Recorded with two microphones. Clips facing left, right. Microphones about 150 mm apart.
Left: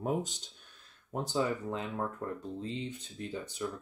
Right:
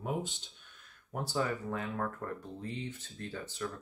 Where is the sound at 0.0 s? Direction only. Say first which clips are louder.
Left 3 dB; 40° left (ahead or behind).